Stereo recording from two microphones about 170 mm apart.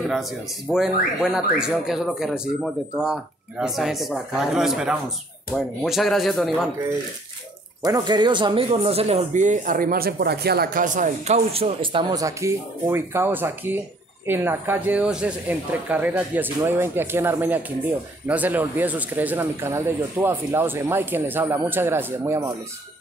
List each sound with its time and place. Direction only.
0.1 s speech: centre (ahead or behind)
7.8 s speech: 25° right (ahead or behind)